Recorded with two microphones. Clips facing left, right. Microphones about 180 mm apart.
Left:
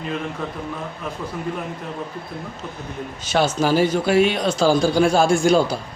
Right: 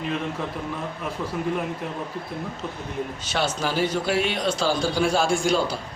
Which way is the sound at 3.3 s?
45° left (ahead or behind).